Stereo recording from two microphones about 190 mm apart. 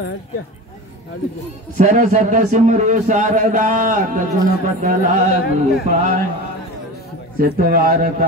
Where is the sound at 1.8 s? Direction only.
45° right (ahead or behind).